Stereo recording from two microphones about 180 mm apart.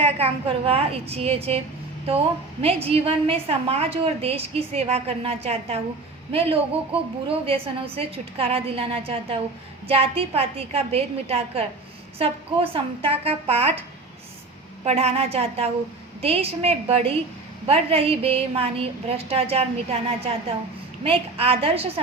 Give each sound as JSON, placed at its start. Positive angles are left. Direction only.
{"t": 0.0, "sound": "a woman's voice", "side_deg": -30}
{"t": 14.8, "sound": "a woman's voice", "side_deg": -35}